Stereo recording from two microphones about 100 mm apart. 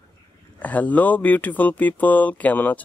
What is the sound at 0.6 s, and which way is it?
Speech, 15° left (ahead or behind).